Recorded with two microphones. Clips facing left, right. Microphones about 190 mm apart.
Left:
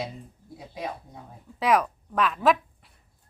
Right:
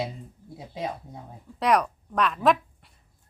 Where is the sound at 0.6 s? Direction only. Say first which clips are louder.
Right 2 dB; 25° right (ahead or behind).